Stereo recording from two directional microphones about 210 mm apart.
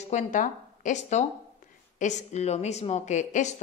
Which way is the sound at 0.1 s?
35° left (ahead or behind).